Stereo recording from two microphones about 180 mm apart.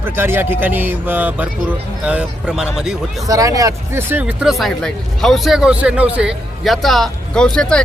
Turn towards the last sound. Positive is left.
turn(degrees=5)  # may be behind; listen again after turning